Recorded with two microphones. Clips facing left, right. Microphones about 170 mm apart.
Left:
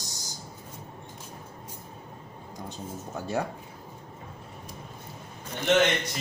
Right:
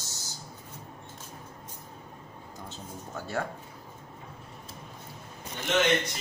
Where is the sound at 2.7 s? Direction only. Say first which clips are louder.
Left 4 dB; 15° left (ahead or behind).